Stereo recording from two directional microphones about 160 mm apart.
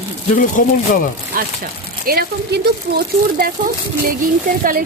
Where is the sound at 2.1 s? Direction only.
80° right.